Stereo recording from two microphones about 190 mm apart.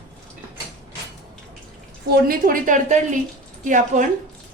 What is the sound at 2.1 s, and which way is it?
A woman's voice, 50° right (ahead or behind).